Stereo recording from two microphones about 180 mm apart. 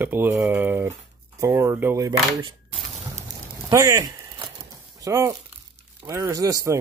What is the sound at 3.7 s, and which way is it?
Speech, 20° right (ahead or behind).